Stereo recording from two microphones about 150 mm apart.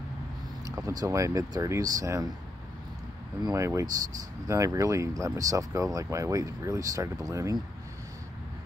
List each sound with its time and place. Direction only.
0.7 s speech: 20° right (ahead or behind)
3.4 s speech: 20° right (ahead or behind)